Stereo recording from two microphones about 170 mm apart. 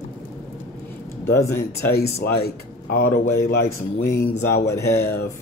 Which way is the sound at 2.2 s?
65° left (ahead or behind).